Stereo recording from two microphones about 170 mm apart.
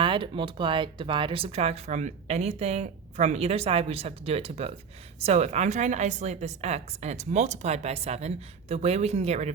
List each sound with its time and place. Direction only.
0.0 s speech: 30° right (ahead or behind)